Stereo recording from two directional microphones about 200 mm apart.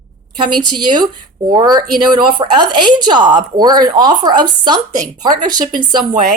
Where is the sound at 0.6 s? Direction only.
20° right (ahead or behind).